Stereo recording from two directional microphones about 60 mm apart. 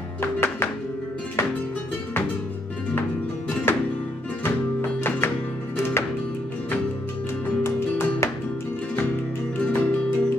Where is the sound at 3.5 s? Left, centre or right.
Left.